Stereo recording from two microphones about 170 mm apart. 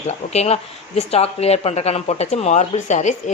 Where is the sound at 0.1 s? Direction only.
40° left (ahead or behind).